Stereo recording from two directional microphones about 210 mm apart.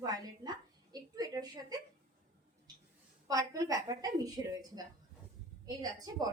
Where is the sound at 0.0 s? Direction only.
20° right (ahead or behind).